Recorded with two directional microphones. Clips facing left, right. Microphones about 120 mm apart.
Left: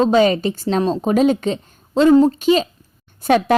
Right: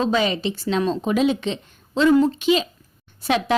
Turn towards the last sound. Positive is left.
turn(degrees=50)  # may be behind; listen again after turning